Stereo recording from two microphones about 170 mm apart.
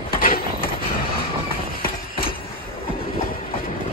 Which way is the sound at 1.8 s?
60° left (ahead or behind).